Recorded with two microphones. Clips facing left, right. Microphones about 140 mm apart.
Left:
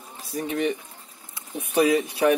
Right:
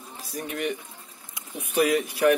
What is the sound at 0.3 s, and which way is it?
Speech, 30° left (ahead or behind).